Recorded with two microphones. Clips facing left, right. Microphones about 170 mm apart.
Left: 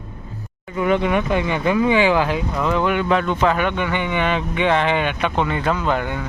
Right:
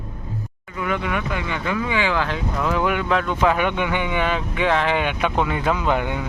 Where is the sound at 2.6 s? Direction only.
5° right (ahead or behind).